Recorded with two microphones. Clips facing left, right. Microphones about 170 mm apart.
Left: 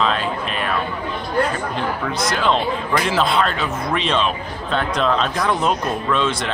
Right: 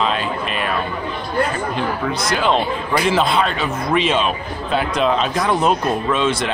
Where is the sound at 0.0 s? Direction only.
5° right (ahead or behind).